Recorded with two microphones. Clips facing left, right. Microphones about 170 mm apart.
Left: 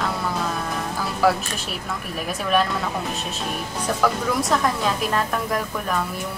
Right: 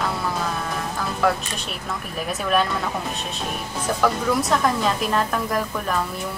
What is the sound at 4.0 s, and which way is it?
A woman's voice, centre (ahead or behind).